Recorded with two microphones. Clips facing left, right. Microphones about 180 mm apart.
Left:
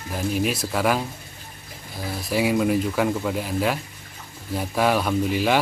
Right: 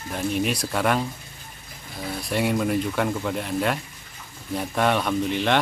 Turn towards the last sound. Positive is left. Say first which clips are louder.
# left 1 dB
turn(degrees=5)  # may be behind; listen again after turning